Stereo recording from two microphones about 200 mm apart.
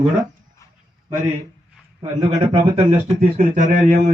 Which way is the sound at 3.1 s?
40° right (ahead or behind).